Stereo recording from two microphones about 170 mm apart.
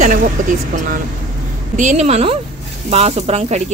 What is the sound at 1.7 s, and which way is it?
A woman's voice, 45° right (ahead or behind).